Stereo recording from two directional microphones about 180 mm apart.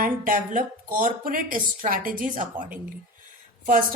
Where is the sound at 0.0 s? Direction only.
50° right (ahead or behind).